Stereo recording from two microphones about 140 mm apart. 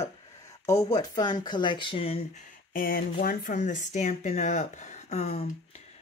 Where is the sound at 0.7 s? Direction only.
25° left (ahead or behind); by 2.1 s 40° left (ahead or behind).